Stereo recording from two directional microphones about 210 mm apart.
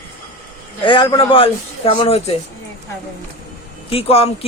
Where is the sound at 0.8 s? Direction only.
20° left (ahead or behind).